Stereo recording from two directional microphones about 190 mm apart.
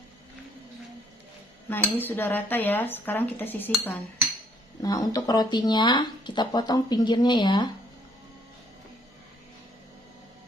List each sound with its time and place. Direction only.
1.7 s dishes: 10° left (ahead or behind)
4.8 s speech: 20° left (ahead or behind)